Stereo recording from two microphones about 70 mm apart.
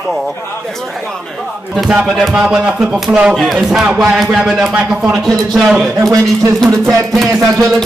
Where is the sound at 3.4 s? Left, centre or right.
Centre.